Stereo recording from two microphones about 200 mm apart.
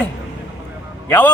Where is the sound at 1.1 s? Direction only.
5° left (ahead or behind).